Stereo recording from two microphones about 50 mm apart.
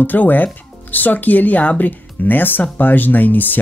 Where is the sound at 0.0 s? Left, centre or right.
Left.